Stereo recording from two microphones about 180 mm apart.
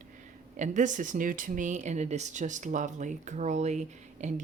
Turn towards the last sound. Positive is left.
turn(degrees=-40)  # may be behind; listen again after turning